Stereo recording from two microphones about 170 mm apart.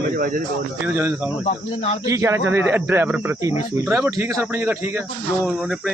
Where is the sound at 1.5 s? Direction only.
40° left (ahead or behind).